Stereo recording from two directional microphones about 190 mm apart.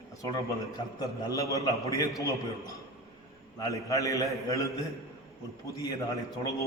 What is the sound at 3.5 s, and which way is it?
A man's voice, 20° left (ahead or behind).